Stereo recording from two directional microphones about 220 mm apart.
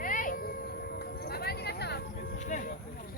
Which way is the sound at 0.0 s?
35° left (ahead or behind).